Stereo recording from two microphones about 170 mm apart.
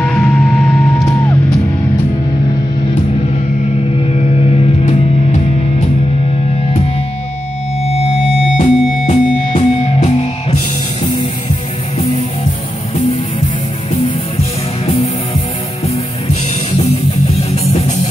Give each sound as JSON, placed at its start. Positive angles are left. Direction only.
{"t": 0.0, "sound": "music", "side_deg": 5}
{"t": 4.1, "sound": "music", "side_deg": 40}
{"t": 8.5, "sound": "music", "side_deg": 45}
{"t": 16.7, "sound": "music", "side_deg": 40}